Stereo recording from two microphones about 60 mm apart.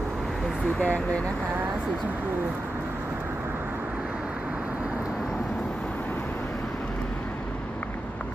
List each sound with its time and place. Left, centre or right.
0.8 s speech: left